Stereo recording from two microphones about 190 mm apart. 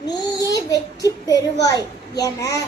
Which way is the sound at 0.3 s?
20° left (ahead or behind).